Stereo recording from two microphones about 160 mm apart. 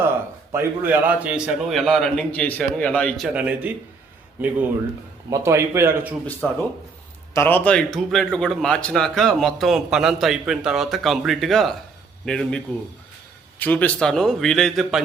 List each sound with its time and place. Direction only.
0.5 s a man's voice: 15° right (ahead or behind); by 3.2 s 5° left (ahead or behind)
3.3 s a man's voice: 10° right (ahead or behind)
6.4 s a man's voice: 5° left (ahead or behind)